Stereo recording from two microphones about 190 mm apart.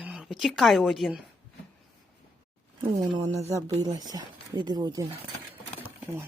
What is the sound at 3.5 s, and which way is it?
Speech, 20° right (ahead or behind).